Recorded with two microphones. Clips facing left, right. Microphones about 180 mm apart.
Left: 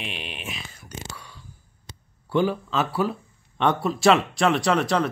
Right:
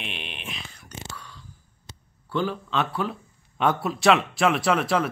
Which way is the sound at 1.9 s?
15° left (ahead or behind).